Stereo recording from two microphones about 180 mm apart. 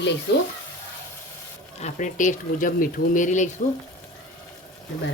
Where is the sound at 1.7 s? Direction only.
40° left (ahead or behind).